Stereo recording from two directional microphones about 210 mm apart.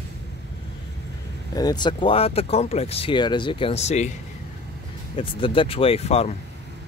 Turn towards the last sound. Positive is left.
turn(degrees=30)  # may be behind; listen again after turning